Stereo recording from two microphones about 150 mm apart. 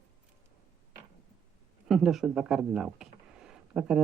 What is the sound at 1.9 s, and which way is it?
Speech, centre (ahead or behind).